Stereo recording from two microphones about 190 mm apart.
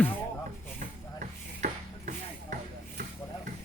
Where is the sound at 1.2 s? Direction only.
45° right (ahead or behind).